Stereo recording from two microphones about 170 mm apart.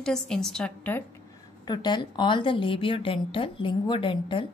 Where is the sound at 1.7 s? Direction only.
25° left (ahead or behind).